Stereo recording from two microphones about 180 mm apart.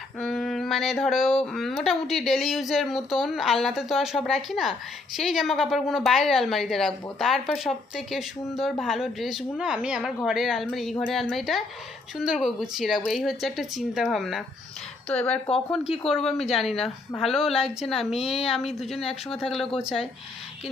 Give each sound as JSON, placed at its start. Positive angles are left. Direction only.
{"t": 0.2, "sound": "speech", "side_deg": 0}
{"t": 19.0, "sound": "speech", "side_deg": 30}
{"t": 19.8, "sound": "speech", "side_deg": -5}